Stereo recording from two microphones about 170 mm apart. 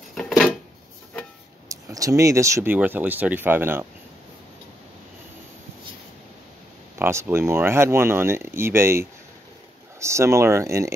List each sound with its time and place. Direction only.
0.1 s a sound: 5° left (ahead or behind)
1.7 s speech: 20° right (ahead or behind)
7.0 s speech: 15° right (ahead or behind)